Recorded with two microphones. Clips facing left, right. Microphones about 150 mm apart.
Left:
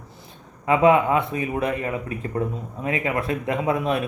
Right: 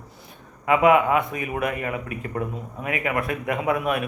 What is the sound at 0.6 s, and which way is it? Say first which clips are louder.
A man's voice: even; 30° left (ahead or behind).